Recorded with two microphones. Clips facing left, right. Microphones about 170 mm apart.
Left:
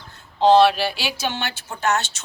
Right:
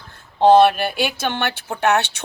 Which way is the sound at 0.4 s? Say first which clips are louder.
Right 2 dB; 55° right (ahead or behind).